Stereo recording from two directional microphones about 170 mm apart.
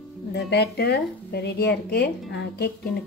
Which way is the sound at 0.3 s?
75° left (ahead or behind).